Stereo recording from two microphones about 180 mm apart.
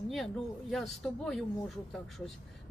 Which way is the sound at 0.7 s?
Centre (ahead or behind).